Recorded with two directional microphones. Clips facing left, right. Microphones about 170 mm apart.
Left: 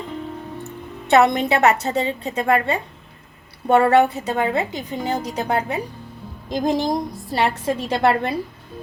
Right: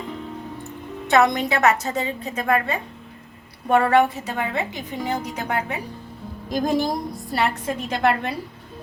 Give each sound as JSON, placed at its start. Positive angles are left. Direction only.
{"t": 1.1, "sound": "a woman's voice", "side_deg": 25}
{"t": 6.5, "sound": "a woman's voice", "side_deg": 20}